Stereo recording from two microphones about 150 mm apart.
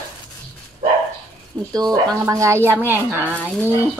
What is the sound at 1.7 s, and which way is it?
Speech, 25° right (ahead or behind).